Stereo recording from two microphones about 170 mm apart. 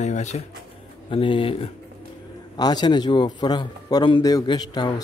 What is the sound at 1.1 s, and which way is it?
A man's voice, 30° left (ahead or behind).